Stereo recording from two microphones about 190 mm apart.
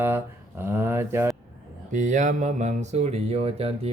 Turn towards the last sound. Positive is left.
turn(degrees=-30)  # may be behind; listen again after turning